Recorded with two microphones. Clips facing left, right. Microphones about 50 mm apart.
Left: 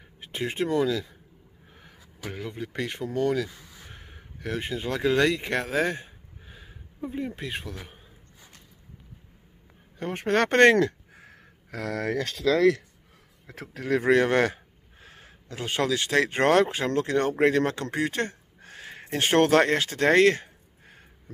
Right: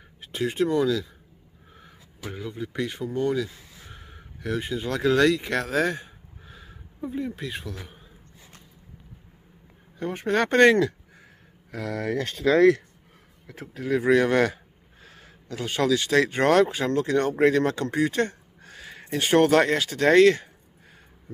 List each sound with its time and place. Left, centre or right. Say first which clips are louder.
0.2 s speech: right 4 dB; left
3.9 s a sound: right 1 dB; left
7.1 s speech: right 2 dB; left
9.9 s speech: even; left
11.7 s speech: even; left
12.4 s speech: right 4 dB; right
13.5 s speech: even; left
14.0 s speech: right 1 dB; left